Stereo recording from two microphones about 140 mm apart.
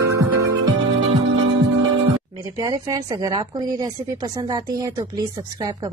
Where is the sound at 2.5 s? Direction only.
25° right (ahead or behind).